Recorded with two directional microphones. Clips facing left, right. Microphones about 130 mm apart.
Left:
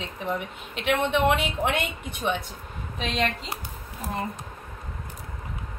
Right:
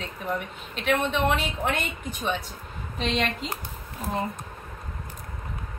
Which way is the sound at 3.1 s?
Centre (ahead or behind).